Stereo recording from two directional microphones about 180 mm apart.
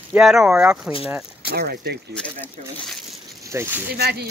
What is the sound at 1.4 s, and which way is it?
Speech, 60° right (ahead or behind).